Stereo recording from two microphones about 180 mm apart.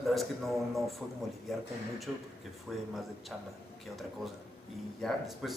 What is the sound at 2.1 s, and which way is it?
Speech, centre (ahead or behind).